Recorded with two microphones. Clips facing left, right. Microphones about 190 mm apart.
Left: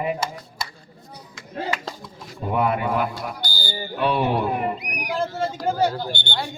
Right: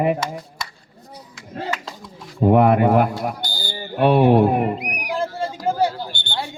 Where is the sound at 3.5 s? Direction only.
5° left (ahead or behind).